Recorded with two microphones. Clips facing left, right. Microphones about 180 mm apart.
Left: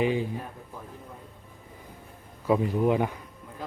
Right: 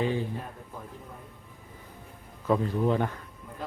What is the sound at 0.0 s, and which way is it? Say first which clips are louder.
Speech: left 3 dB; 15° left (ahead or behind).